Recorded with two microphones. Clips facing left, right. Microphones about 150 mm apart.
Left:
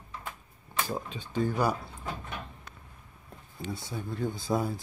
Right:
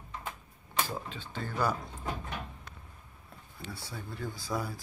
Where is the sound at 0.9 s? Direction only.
15° left (ahead or behind).